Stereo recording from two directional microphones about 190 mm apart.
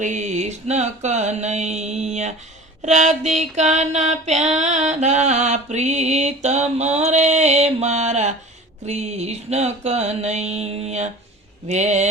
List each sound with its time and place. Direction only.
0.0 s music: 40° right (ahead or behind)